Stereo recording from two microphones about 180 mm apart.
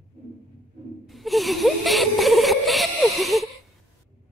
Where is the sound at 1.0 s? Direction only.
Centre (ahead or behind).